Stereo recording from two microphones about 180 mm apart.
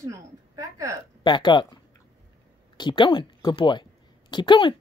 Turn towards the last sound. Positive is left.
turn(degrees=25)  # may be behind; listen again after turning